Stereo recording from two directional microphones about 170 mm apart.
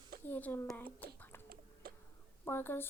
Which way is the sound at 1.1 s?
10° left (ahead or behind).